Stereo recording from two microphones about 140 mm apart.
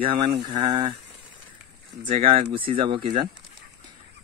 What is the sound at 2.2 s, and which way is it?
Speech, 40° right (ahead or behind).